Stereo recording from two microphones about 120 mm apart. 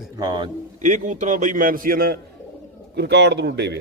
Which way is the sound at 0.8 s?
90° right.